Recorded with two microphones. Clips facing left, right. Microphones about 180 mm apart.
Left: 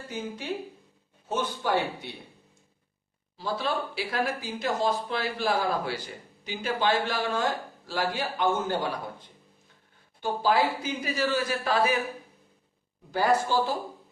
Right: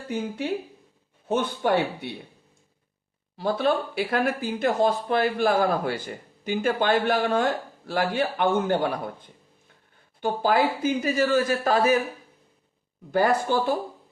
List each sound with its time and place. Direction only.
1.3 s speech: 60° right (ahead or behind)
3.3 s speech: 55° right (ahead or behind)
10.2 s speech: 55° right (ahead or behind)
13.1 s speech: 55° right (ahead or behind)